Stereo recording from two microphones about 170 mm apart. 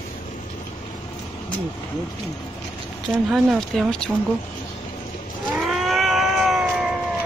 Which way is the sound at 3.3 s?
Centre (ahead or behind).